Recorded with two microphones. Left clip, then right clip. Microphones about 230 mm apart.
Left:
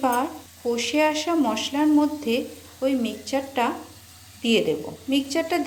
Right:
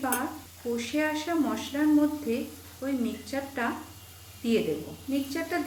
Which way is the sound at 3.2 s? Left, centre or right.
Left.